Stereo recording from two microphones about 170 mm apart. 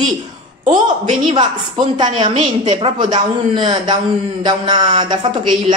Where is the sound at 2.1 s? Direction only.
45° right (ahead or behind).